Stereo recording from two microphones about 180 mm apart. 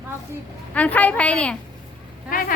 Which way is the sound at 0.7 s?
10° left (ahead or behind).